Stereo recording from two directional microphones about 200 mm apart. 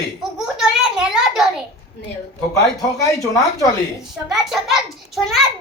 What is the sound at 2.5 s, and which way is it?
Speech, 15° left (ahead or behind).